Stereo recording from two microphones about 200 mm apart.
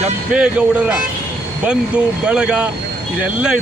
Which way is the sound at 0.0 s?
5° right (ahead or behind).